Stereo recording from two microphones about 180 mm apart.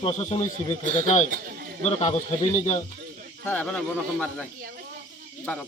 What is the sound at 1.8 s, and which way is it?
A man's voice, 35° left (ahead or behind).